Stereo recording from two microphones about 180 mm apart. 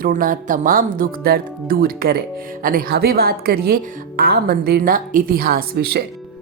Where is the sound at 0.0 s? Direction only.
50° right (ahead or behind).